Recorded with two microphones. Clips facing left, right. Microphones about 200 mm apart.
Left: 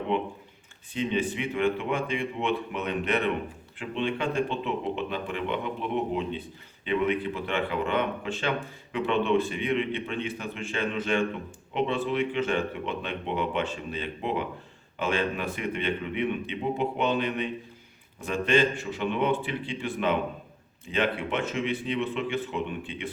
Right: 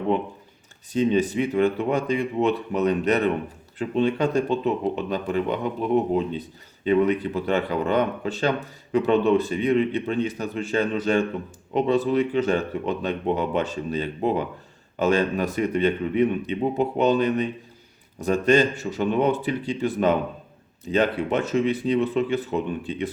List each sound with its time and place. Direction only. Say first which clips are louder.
0.9 s speech: right 7 dB; 40° right (ahead or behind)